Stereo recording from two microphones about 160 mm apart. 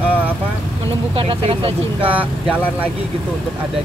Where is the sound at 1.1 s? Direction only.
35° right (ahead or behind).